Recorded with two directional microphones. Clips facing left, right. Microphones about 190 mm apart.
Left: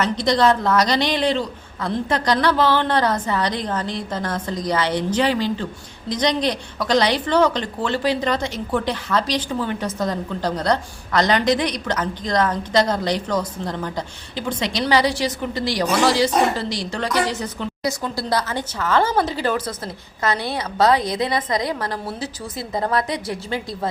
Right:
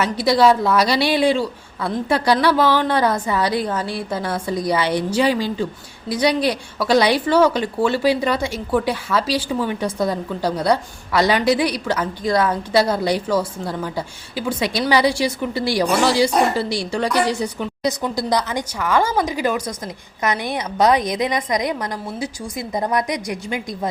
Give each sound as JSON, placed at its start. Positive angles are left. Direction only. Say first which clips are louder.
{"t": 0.0, "sound": "a woman's voice", "louder": "right 2 dB", "side_deg": -5}